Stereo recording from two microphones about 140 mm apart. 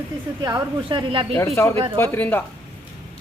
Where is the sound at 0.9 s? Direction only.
35° right (ahead or behind).